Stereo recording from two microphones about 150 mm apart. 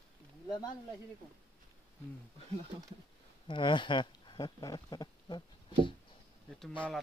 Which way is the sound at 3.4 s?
30° left (ahead or behind).